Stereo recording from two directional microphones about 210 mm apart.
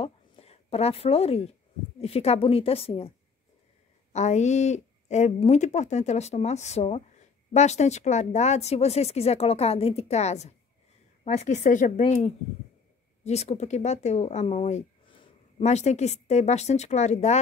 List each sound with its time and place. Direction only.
0.0 s a sound: 30° left (ahead or behind)
2.0 s a woman's voice: 30° left (ahead or behind)
4.1 s speech: 35° left (ahead or behind)